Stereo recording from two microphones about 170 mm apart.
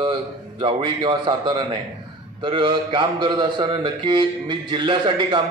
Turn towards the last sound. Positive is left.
turn(degrees=-30)  # may be behind; listen again after turning